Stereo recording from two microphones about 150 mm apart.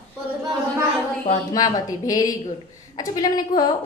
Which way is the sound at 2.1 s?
25° left (ahead or behind).